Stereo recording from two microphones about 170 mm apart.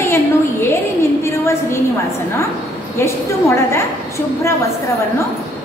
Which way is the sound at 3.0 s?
15° left (ahead or behind).